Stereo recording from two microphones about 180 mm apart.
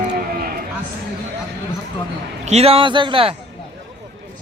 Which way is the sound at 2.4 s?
35° right (ahead or behind).